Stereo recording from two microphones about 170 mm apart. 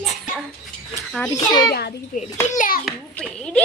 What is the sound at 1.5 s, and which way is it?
Speech, 25° left (ahead or behind).